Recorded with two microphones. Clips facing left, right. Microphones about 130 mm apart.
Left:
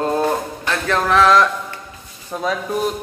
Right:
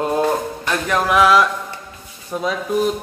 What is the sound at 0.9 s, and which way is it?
A man's voice, 10° right (ahead or behind).